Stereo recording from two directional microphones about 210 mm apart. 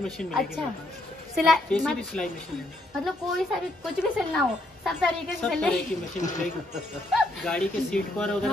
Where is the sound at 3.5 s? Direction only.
Centre (ahead or behind).